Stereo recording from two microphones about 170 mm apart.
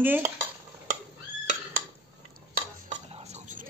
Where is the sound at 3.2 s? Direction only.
45° right (ahead or behind).